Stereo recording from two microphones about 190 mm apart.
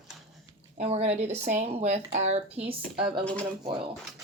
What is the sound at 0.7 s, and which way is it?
Speech, 35° right (ahead or behind).